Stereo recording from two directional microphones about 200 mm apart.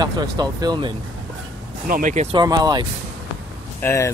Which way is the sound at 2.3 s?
20° right (ahead or behind).